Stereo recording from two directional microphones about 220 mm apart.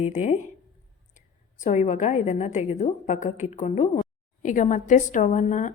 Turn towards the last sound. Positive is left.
turn(degrees=35)  # may be behind; listen again after turning